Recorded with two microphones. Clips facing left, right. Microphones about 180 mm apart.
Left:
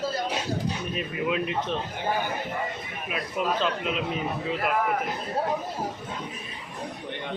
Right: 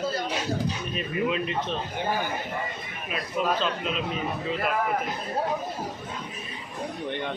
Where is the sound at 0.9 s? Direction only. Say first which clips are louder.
Right 1 dB; 10° left (ahead or behind).